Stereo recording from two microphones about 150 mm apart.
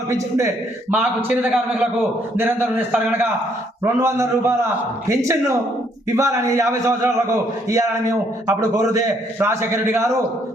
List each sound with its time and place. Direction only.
0.1 s a man's voice: 20° right (ahead or behind)
8.4 s a man's voice: 20° right (ahead or behind)